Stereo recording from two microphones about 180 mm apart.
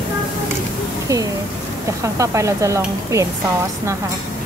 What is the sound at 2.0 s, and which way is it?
Speech, 15° right (ahead or behind).